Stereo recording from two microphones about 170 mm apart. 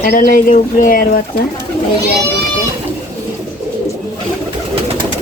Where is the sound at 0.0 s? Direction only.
55° left (ahead or behind).